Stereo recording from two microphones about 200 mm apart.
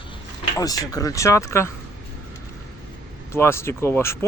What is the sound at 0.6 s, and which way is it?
Speech, 20° left (ahead or behind).